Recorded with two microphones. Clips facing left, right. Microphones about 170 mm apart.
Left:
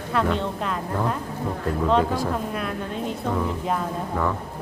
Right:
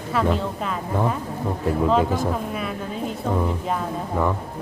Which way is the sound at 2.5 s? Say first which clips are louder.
Even; centre (ahead or behind).